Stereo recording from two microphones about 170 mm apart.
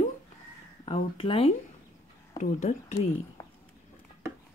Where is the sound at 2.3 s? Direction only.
45° left (ahead or behind).